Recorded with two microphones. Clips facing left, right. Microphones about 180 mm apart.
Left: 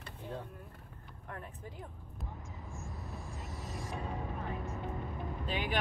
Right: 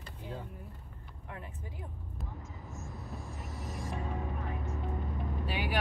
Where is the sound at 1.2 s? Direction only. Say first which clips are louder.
Even; 10° right (ahead or behind).